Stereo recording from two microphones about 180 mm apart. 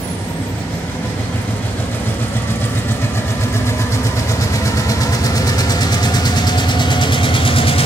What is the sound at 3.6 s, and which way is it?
Vehicle, 15° left (ahead or behind).